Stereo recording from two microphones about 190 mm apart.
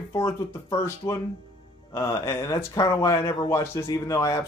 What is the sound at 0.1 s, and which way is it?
Speech, 15° left (ahead or behind).